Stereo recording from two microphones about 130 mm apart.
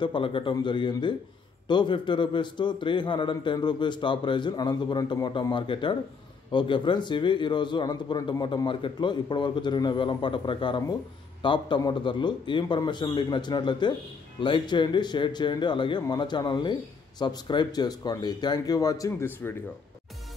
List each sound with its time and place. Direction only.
0.0 s a man's voice: 40° left (ahead or behind); by 19.5 s 20° left (ahead or behind)